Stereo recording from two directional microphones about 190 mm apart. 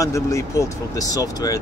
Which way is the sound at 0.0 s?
15° left (ahead or behind).